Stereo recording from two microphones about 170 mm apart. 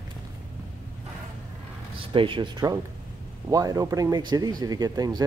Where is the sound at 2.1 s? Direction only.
30° right (ahead or behind).